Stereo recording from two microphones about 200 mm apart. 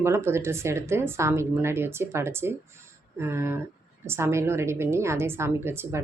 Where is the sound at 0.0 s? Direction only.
15° right (ahead or behind).